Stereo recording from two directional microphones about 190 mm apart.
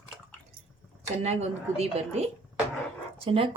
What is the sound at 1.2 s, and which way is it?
Speech, 35° right (ahead or behind).